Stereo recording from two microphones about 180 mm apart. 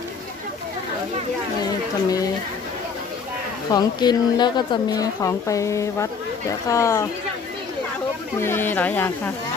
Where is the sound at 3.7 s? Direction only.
25° left (ahead or behind).